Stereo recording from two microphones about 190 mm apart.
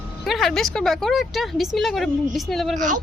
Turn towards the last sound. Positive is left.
turn(degrees=-40)  # may be behind; listen again after turning